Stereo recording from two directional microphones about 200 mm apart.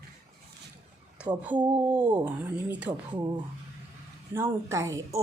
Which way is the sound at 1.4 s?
10° right (ahead or behind).